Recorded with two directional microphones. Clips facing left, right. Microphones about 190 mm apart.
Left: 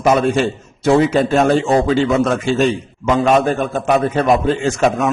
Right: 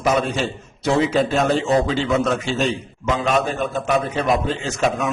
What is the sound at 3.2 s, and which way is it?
A man's voice, 50° left (ahead or behind).